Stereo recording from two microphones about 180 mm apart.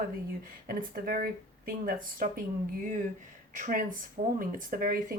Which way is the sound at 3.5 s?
45° right (ahead or behind).